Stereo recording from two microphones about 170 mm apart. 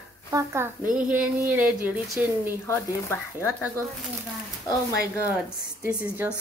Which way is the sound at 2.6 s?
15° left (ahead or behind).